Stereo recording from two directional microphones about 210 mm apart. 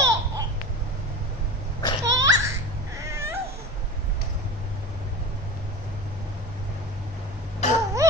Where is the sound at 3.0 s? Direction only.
15° right (ahead or behind).